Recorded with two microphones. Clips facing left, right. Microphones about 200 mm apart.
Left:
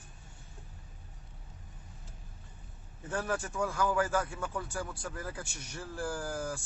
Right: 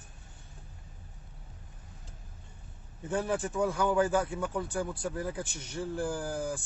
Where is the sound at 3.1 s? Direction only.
20° right (ahead or behind).